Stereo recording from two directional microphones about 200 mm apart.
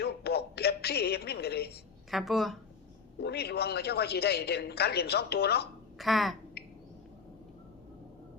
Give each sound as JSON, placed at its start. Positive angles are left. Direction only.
{"t": 0.0, "sound": "music", "side_deg": 55}
{"t": 2.0, "sound": "speech", "side_deg": 0}
{"t": 3.2, "sound": "a woman's voice", "side_deg": 55}
{"t": 6.0, "sound": "speech", "side_deg": 0}